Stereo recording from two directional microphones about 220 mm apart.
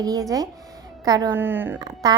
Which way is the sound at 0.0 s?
15° right (ahead or behind).